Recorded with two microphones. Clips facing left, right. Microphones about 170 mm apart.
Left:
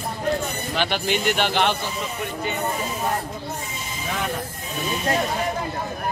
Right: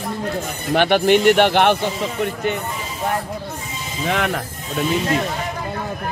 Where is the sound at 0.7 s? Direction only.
60° right (ahead or behind).